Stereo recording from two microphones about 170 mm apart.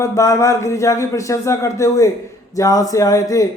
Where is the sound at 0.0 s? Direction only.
20° left (ahead or behind).